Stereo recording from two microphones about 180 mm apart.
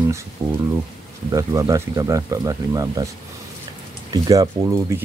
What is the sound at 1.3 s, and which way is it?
Speech, 20° right (ahead or behind).